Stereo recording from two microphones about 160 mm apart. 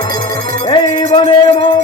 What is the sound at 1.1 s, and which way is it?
Music, 35° left (ahead or behind).